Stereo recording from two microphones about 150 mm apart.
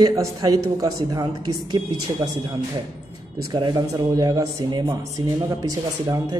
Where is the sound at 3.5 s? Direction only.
25° right (ahead or behind).